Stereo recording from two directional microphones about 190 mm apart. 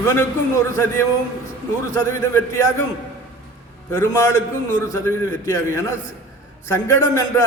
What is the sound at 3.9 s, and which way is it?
A man's voice, 15° left (ahead or behind).